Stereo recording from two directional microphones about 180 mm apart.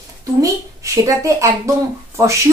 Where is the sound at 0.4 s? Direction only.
15° right (ahead or behind).